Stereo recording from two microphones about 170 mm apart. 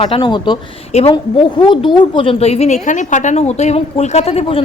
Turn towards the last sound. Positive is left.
turn(degrees=35)  # may be behind; listen again after turning